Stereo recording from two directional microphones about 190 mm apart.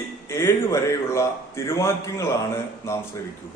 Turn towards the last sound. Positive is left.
turn(degrees=15)  # may be behind; listen again after turning